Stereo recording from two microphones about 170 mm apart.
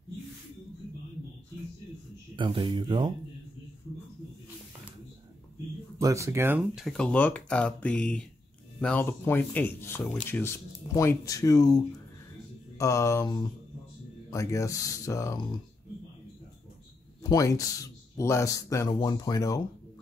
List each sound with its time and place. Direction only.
2.3 s speech: 30° right (ahead or behind)
5.9 s speech: 20° right (ahead or behind); by 15.3 s 20° left (ahead or behind)
17.2 s speech: 20° left (ahead or behind)